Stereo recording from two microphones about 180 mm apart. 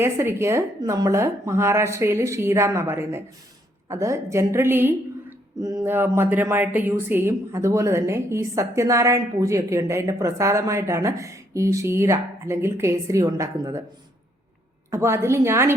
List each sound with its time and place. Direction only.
0.0 s a woman's voice: 15° right (ahead or behind)
14.8 s a woman's voice: 15° right (ahead or behind)